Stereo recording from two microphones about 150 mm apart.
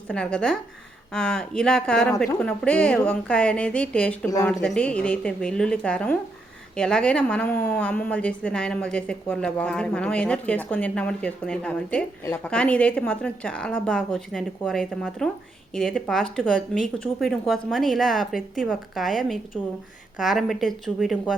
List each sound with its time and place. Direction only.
0.1 s a woman's voice: 5° left (ahead or behind)